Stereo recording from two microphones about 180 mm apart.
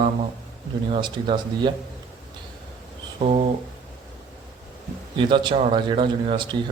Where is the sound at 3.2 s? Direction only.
35° right (ahead or behind).